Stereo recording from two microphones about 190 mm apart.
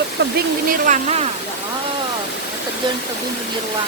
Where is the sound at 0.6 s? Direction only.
45° right (ahead or behind).